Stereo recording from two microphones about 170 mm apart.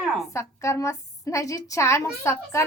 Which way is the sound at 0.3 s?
15° left (ahead or behind).